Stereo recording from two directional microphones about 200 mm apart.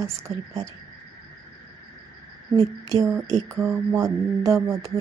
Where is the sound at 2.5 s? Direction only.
30° right (ahead or behind).